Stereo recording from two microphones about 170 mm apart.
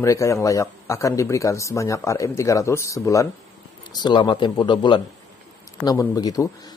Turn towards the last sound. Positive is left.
turn(degrees=20)  # may be behind; listen again after turning